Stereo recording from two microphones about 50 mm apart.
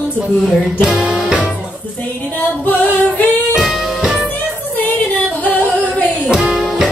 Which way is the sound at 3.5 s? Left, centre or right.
Centre.